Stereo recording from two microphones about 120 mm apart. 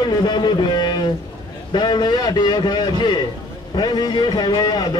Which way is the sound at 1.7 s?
35° left (ahead or behind).